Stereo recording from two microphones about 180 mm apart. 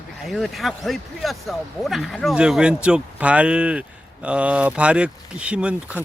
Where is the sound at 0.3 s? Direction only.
Centre (ahead or behind).